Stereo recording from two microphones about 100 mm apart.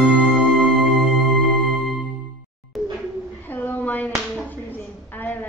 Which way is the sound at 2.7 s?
Centre (ahead or behind).